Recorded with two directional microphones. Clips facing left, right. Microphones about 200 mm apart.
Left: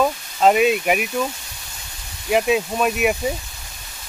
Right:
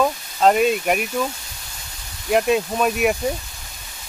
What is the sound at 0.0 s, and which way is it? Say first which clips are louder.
Speech: even; 5° left (ahead or behind).